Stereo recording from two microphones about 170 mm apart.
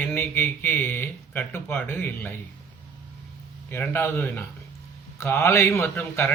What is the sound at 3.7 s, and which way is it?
A man's voice, 10° left (ahead or behind).